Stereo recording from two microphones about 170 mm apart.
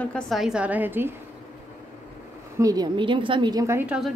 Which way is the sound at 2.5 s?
20° right (ahead or behind).